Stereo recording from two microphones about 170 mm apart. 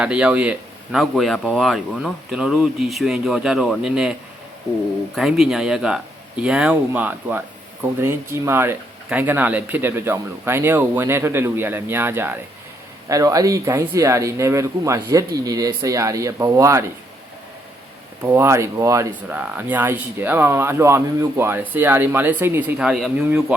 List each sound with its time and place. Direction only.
0.0 s speech: 5° right (ahead or behind)
5.1 s speech: centre (ahead or behind); by 16.9 s 15° right (ahead or behind)
18.2 s speech: 10° right (ahead or behind)